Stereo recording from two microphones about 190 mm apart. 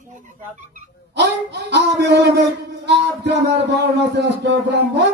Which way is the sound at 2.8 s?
65° right (ahead or behind).